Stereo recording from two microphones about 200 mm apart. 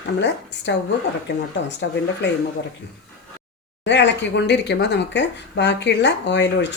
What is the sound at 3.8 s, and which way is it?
A woman's voice, 60° left (ahead or behind).